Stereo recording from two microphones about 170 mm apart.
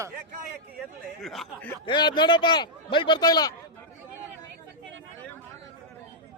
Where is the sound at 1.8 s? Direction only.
25° left (ahead or behind).